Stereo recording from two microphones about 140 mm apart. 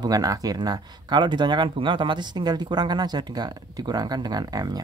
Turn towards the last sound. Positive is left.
turn(degrees=-25)  # may be behind; listen again after turning